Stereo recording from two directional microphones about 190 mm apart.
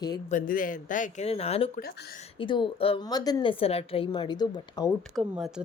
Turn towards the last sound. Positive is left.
turn(degrees=-5)  # may be behind; listen again after turning